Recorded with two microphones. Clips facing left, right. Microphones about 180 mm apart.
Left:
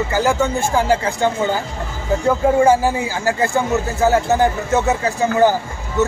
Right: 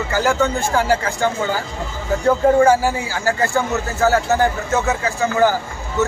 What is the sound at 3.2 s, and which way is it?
Speech, 15° left (ahead or behind).